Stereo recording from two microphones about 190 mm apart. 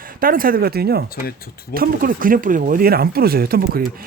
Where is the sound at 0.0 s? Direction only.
50° right (ahead or behind).